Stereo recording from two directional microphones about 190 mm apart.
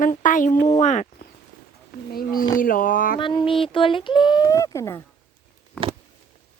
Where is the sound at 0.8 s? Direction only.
40° left (ahead or behind).